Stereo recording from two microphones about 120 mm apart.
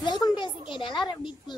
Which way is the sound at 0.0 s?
40° left (ahead or behind).